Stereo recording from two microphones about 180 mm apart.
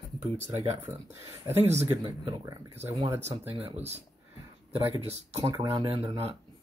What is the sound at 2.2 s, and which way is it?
Speech, 20° right (ahead or behind).